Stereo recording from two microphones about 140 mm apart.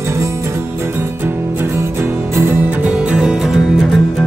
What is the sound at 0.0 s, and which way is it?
Music, 20° right (ahead or behind).